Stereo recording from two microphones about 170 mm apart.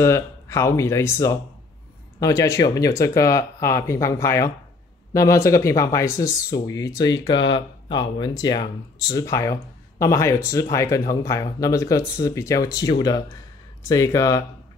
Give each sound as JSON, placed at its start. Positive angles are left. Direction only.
{"t": 0.0, "sound": "speech", "side_deg": 15}